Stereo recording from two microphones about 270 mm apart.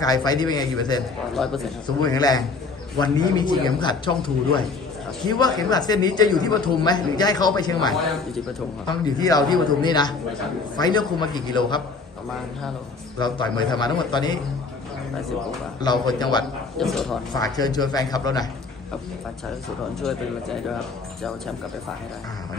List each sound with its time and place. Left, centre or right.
0.0 s speech: centre
1.3 s speech: centre
2.0 s speech: centre
13.2 s speech: centre
15.9 s speech: centre
16.7 s speech: centre
17.3 s speech: centre
20.0 s speech: centre